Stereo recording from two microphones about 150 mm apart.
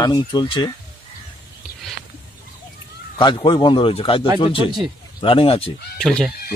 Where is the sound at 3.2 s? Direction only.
30° left (ahead or behind).